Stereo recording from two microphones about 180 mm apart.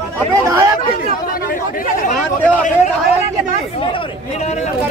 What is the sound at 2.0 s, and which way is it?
Speech, 45° left (ahead or behind).